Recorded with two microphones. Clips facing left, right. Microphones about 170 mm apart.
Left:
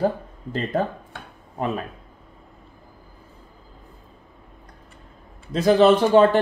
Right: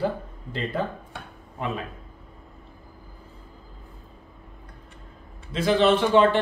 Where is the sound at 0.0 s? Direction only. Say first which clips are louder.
Left 4 dB; 40° left (ahead or behind).